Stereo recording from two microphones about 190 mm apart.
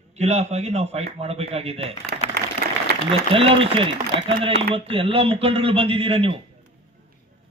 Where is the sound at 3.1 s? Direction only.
30° right (ahead or behind).